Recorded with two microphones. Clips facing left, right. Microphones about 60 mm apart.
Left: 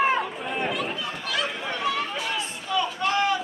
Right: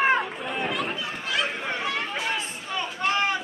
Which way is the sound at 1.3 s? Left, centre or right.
Right.